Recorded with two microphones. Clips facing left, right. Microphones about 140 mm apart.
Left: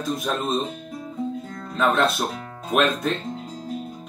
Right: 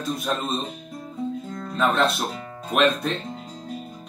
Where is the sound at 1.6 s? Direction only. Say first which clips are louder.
Left 1 dB; centre (ahead or behind).